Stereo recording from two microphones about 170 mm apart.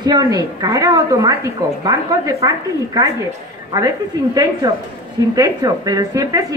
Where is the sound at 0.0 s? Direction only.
25° right (ahead or behind).